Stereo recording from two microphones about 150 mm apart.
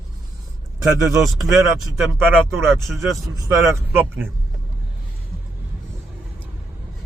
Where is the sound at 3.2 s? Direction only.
20° right (ahead or behind).